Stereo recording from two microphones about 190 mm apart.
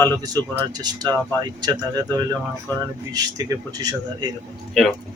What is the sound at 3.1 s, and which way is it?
Speech, 20° right (ahead or behind).